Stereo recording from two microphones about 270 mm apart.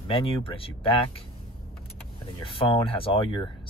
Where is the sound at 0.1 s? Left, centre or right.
Centre.